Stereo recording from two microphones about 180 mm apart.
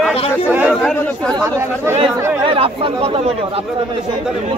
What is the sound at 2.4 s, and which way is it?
Speech, 30° right (ahead or behind).